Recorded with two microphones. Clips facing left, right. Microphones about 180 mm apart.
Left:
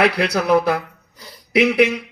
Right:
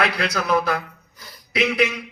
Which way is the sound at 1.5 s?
60° left (ahead or behind).